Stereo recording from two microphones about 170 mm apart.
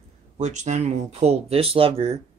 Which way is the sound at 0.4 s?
45° right (ahead or behind).